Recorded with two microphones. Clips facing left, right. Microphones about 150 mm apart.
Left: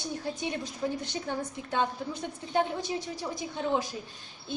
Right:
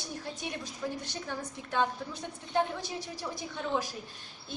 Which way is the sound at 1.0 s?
20° left (ahead or behind).